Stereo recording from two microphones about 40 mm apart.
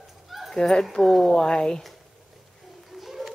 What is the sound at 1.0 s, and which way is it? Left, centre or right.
Speech, centre.